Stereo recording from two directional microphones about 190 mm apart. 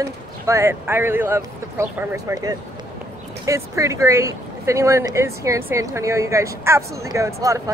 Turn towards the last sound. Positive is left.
turn(degrees=-15)  # may be behind; listen again after turning